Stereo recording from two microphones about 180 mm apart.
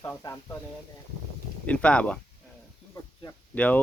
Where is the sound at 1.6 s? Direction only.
5° left (ahead or behind).